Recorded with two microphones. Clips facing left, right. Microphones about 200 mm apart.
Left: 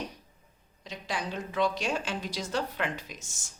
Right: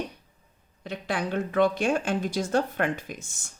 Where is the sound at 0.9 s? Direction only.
55° right (ahead or behind).